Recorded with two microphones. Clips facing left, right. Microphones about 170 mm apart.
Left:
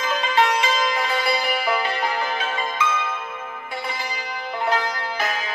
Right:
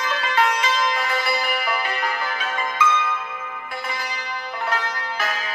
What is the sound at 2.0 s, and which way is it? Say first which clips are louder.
Music: left 2 dB; 25° left (ahead or behind).